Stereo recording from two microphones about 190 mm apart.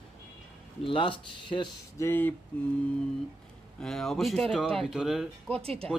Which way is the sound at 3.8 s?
Centre (ahead or behind).